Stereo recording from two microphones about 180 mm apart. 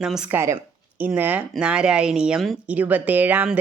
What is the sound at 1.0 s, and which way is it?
Speech, 10° right (ahead or behind).